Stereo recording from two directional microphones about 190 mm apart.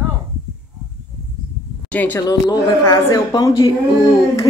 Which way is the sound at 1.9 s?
10° left (ahead or behind).